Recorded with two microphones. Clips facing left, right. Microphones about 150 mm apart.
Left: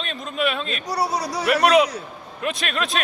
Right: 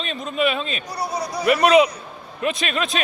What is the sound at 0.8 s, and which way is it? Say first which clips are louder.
Speech: left 3 dB; 90° left.